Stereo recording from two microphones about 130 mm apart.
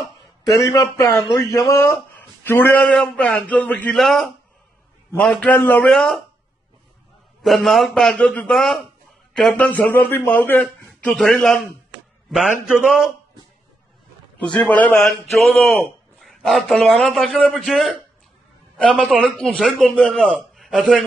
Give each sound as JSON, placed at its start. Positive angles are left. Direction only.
{"t": 0.5, "sound": "a man's voice", "side_deg": 25}
{"t": 7.4, "sound": "a man's voice", "side_deg": 0}
{"t": 14.7, "sound": "a man's voice", "side_deg": 10}
{"t": 18.9, "sound": "a man's voice", "side_deg": -5}